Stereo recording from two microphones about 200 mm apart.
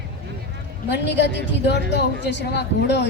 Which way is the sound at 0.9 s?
60° left (ahead or behind).